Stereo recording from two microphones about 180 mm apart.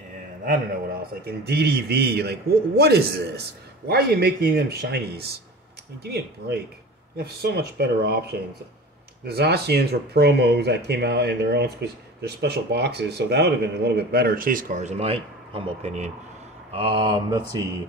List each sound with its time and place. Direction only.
0.5 s a man's voice: 50° right (ahead or behind)
1.2 s speech: 60° right (ahead or behind); by 16.1 s 40° right (ahead or behind)
16.7 s mantra: 30° right (ahead or behind)